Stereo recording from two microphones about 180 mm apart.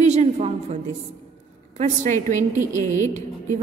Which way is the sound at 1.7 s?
45° right (ahead or behind).